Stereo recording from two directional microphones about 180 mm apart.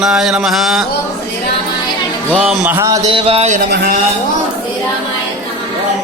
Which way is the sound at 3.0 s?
30° right (ahead or behind).